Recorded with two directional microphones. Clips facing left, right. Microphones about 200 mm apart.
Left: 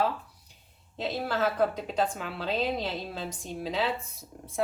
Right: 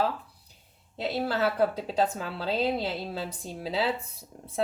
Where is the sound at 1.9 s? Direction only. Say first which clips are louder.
Right 2 dB; 35° right (ahead or behind).